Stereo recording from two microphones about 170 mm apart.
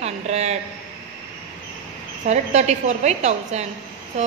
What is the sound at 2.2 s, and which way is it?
A woman's voice, 40° right (ahead or behind).